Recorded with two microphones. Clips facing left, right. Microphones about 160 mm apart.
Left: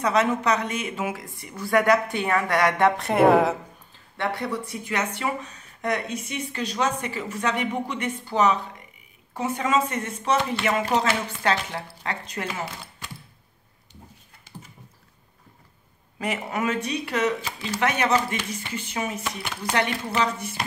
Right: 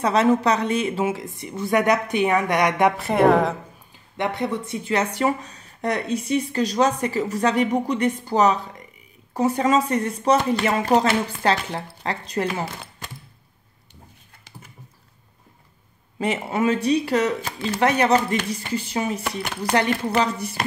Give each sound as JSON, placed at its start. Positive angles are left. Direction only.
{"t": 0.0, "sound": "a woman's voice", "side_deg": -30}
{"t": 3.0, "sound": "speech", "side_deg": 0}
{"t": 3.9, "sound": "speech", "side_deg": -20}
{"t": 16.2, "sound": "speech", "side_deg": -30}
{"t": 17.4, "sound": "speech", "side_deg": -50}
{"t": 17.7, "sound": "speech", "side_deg": -35}
{"t": 19.2, "sound": "speech", "side_deg": -55}
{"t": 20.2, "sound": "speech", "side_deg": -35}